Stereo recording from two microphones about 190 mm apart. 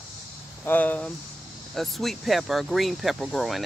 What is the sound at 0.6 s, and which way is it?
Speech, 10° left (ahead or behind).